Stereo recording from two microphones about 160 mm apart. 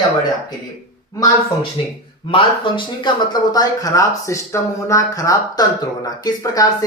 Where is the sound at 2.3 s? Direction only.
30° left (ahead or behind).